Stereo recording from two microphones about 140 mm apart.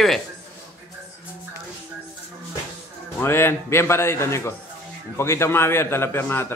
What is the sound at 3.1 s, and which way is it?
A man's voice, 15° left (ahead or behind).